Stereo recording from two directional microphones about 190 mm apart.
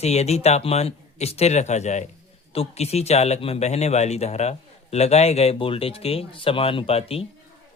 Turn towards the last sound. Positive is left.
turn(degrees=30)  # may be behind; listen again after turning